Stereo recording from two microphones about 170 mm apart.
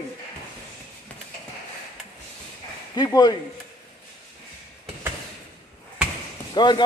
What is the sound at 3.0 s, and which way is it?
Speech, 25° left (ahead or behind).